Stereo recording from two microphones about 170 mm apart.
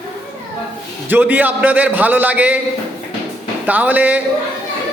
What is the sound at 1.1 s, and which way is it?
A man's voice, 10° right (ahead or behind).